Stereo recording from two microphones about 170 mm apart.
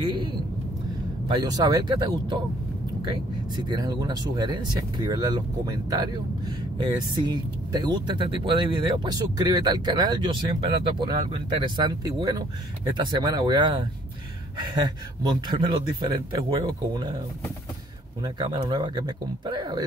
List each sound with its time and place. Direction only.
0.0 s vehicle: 25° right (ahead or behind)
1.3 s speech: 25° right (ahead or behind)
18.2 s speech: 25° right (ahead or behind)